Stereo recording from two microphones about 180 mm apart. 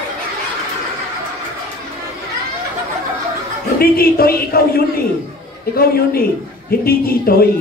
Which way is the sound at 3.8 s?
55° left (ahead or behind).